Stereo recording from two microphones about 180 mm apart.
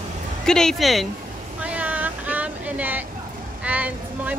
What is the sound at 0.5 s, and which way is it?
Speech, 5° left (ahead or behind).